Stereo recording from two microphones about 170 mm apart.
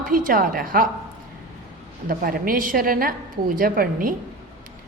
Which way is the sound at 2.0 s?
60° right (ahead or behind).